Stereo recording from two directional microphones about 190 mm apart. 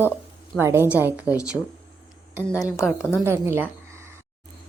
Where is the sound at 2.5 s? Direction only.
15° left (ahead or behind).